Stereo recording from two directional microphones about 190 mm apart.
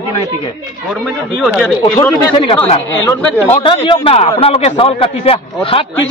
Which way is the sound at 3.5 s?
30° left (ahead or behind).